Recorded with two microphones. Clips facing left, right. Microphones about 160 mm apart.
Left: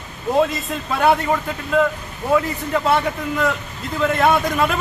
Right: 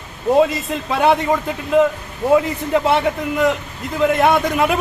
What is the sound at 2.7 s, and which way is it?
A man's voice, 20° right (ahead or behind).